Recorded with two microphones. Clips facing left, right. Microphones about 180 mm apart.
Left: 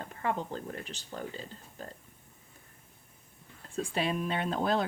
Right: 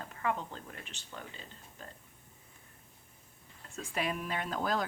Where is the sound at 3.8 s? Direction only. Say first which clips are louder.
Left 5 dB; 30° left (ahead or behind).